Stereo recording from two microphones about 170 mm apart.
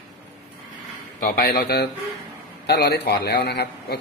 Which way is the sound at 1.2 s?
60° left (ahead or behind).